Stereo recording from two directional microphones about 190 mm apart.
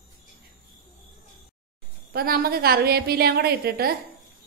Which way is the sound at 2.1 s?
50° right (ahead or behind).